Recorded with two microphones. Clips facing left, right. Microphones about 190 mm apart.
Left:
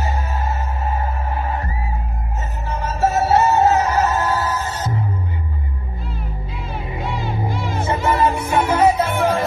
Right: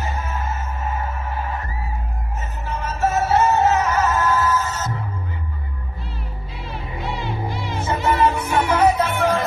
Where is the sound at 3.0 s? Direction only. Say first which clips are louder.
Left 2 dB; 35° left (ahead or behind).